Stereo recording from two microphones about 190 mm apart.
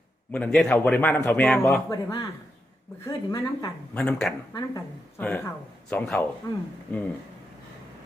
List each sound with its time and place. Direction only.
0.3 s a man's voice: 10° left (ahead or behind)
1.9 s speech: 20° left (ahead or behind)
3.9 s speech: 5° left (ahead or behind)
4.5 s speech: 20° left (ahead or behind)
5.2 s a man's voice: 5° left (ahead or behind)
6.5 s speech: 20° left (ahead or behind)